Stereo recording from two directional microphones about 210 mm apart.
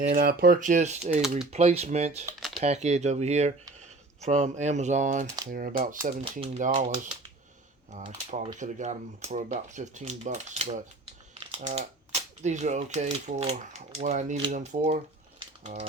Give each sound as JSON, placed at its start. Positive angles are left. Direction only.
{"t": 0.1, "sound": "speech", "side_deg": -45}